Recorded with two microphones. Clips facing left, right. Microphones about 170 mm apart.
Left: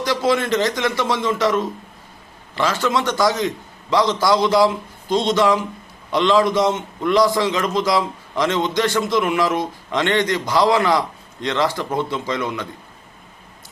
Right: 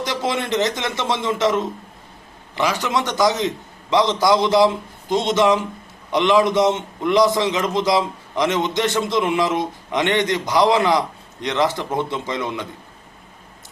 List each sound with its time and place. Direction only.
0.0 s a man's voice: 20° right (ahead or behind)